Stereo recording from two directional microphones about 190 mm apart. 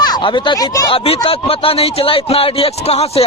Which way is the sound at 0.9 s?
30° left (ahead or behind).